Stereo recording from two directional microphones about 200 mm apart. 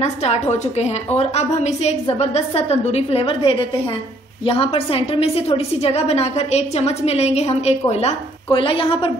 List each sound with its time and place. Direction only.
0.0 s a woman's voice: 35° left (ahead or behind)